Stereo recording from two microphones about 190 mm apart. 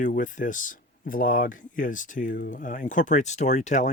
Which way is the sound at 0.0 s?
40° left (ahead or behind).